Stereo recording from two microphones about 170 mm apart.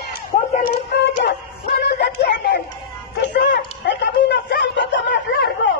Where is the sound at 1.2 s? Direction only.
80° left.